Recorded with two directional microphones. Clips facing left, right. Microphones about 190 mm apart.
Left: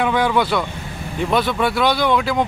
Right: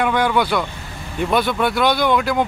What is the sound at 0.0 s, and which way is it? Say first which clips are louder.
Speech: even; centre (ahead or behind).